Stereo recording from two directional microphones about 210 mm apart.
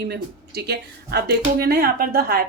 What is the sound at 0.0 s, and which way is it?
Speech, 50° right (ahead or behind).